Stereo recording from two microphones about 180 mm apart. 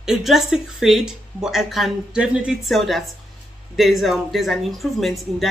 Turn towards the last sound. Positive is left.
turn(degrees=0)  # may be behind; listen again after turning